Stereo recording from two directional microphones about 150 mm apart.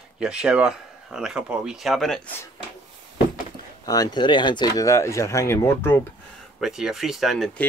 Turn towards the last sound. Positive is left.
turn(degrees=0)  # may be behind; listen again after turning